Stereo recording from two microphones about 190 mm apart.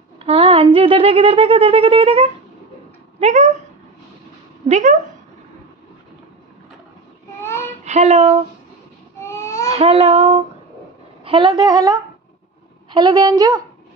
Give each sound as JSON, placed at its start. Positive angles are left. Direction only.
{"t": 0.2, "sound": "a sound", "side_deg": -30}
{"t": 0.7, "sound": "speech", "side_deg": -25}
{"t": 4.6, "sound": "speech", "side_deg": -40}
{"t": 7.4, "sound": "child singing", "side_deg": 15}
{"t": 7.8, "sound": "speech", "side_deg": -35}
{"t": 9.2, "sound": "baby cry", "side_deg": 15}
{"t": 9.7, "sound": "speech", "side_deg": -30}